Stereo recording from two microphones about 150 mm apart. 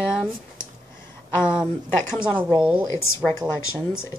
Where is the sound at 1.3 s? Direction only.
15° left (ahead or behind).